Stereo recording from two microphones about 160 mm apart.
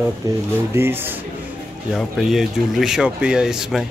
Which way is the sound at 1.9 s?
Centre (ahead or behind).